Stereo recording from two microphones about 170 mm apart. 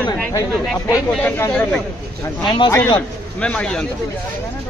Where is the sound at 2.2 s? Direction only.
20° left (ahead or behind).